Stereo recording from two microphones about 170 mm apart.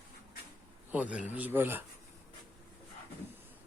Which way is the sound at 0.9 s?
10° right (ahead or behind).